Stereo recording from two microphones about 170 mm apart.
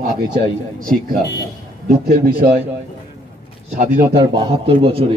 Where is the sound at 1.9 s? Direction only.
60° right (ahead or behind).